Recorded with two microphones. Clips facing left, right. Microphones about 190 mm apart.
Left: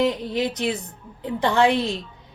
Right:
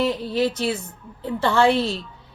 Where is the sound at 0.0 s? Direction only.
15° left (ahead or behind).